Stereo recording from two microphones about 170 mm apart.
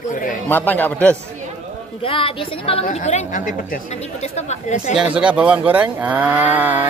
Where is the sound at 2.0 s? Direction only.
30° left (ahead or behind).